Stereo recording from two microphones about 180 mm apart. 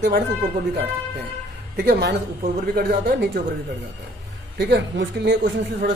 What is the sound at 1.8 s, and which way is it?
Speech, 65° right (ahead or behind).